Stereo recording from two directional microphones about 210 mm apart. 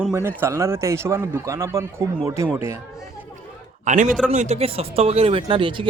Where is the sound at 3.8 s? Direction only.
35° right (ahead or behind).